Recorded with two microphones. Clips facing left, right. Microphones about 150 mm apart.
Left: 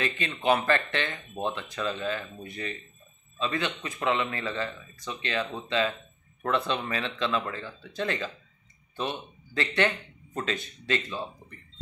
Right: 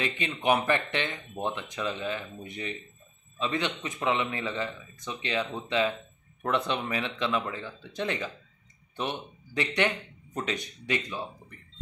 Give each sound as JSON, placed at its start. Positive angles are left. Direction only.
{"t": 0.0, "sound": "a man's voice", "side_deg": -15}
{"t": 9.5, "sound": "a man's voice", "side_deg": -15}